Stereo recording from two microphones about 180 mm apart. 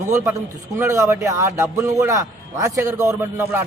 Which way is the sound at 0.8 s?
15° right (ahead or behind).